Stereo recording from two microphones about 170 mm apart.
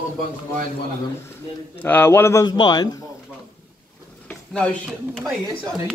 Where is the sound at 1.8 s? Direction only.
10° left (ahead or behind).